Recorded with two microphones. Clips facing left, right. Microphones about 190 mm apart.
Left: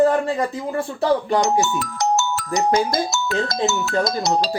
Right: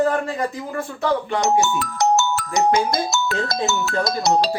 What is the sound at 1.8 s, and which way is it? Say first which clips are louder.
Speech: right 2 dB; 60° right (ahead or behind).